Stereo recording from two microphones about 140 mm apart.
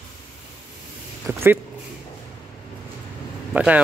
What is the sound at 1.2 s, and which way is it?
Speech, 15° right (ahead or behind).